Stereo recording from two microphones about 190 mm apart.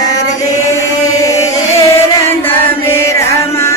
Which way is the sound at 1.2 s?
15° left (ahead or behind).